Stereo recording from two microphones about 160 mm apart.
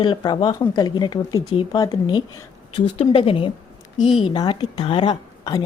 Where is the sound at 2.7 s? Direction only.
35° left (ahead or behind).